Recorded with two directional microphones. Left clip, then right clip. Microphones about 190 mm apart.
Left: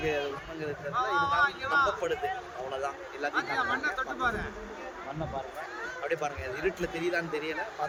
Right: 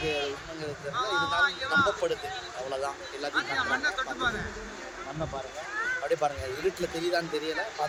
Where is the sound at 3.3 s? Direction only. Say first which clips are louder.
Right 2 dB; 25° left (ahead or behind).